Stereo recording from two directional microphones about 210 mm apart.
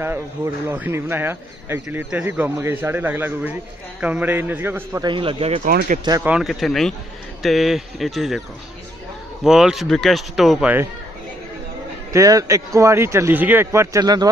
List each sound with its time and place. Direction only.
0.7 s speech: 10° right (ahead or behind)
5.0 s speech: 25° right (ahead or behind)
5.7 s speech: 45° right (ahead or behind)
6.0 s speech: 15° right (ahead or behind)
6.3 s speech: centre (ahead or behind)
9.4 s speech: centre (ahead or behind)
12.1 s speech: 15° right (ahead or behind)